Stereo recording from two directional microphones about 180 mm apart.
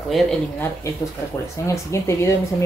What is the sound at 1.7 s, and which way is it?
Speech, 15° left (ahead or behind).